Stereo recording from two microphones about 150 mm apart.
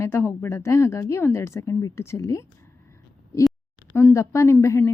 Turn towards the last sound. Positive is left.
turn(degrees=20)  # may be behind; listen again after turning